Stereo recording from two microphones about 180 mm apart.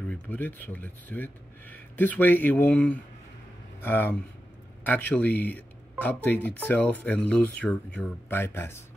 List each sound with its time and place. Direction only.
0.1 s speech: 10° left (ahead or behind)